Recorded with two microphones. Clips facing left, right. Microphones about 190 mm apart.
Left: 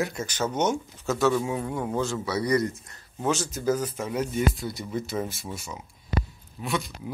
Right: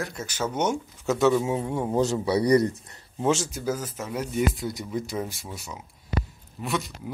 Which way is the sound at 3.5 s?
10° right (ahead or behind).